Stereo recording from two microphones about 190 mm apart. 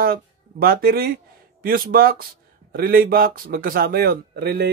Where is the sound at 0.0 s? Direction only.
50° right (ahead or behind).